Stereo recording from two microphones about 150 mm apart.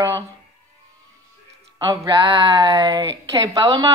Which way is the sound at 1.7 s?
30° right (ahead or behind).